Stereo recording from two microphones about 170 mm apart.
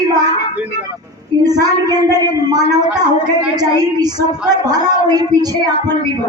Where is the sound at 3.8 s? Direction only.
25° right (ahead or behind).